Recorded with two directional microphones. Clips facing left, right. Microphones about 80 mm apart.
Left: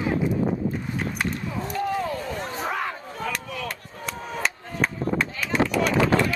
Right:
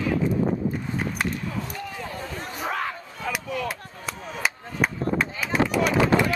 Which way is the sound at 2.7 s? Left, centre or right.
Centre.